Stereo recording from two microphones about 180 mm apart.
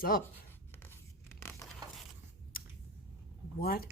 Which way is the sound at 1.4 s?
15° left (ahead or behind).